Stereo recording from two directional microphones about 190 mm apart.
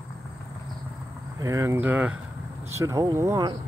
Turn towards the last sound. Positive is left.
turn(degrees=-15)  # may be behind; listen again after turning